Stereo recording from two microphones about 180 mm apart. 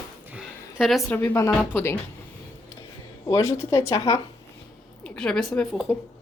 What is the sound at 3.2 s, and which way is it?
Speech, 15° left (ahead or behind).